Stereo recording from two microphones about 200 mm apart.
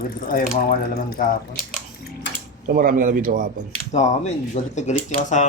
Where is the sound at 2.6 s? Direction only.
45° right (ahead or behind).